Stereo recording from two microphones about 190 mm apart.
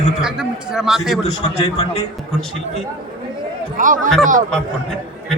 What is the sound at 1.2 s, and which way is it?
Speech, 35° left (ahead or behind).